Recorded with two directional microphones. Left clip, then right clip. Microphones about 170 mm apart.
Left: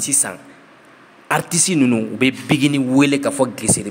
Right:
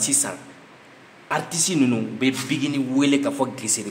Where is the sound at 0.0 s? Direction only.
35° left (ahead or behind).